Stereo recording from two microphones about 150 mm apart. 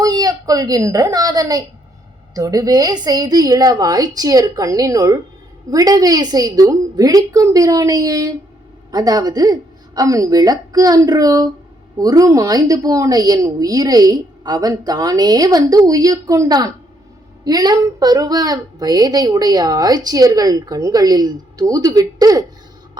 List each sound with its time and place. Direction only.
0.0 s a woman's voice: 25° right (ahead or behind)